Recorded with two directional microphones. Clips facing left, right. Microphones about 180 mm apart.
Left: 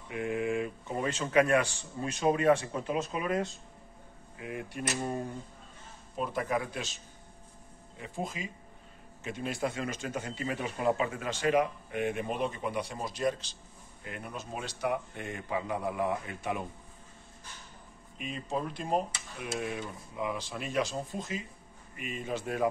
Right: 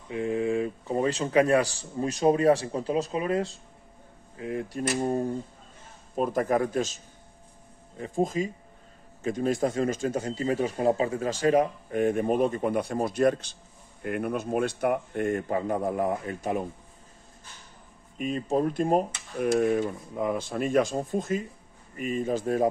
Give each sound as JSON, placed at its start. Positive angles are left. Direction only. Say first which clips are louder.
{"t": 0.1, "sound": "a man's voice", "louder": "right 5 dB", "side_deg": -30}
{"t": 8.0, "sound": "a man's voice", "louder": "right 11 dB", "side_deg": -40}
{"t": 18.1, "sound": "a man's voice", "louder": "right 9 dB", "side_deg": -45}